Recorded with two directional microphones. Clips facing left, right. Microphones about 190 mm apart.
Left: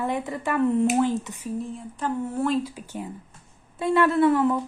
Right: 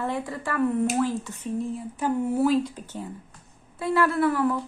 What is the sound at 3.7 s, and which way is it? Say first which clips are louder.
Speech: left 3 dB; 20° left (ahead or behind).